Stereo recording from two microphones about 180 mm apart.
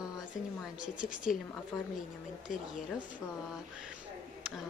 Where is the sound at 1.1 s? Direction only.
45° left (ahead or behind).